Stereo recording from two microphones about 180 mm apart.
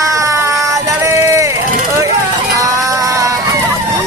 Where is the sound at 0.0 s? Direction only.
20° right (ahead or behind).